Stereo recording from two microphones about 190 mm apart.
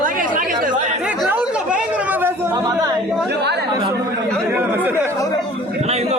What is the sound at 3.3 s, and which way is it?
Speech, 60° right (ahead or behind).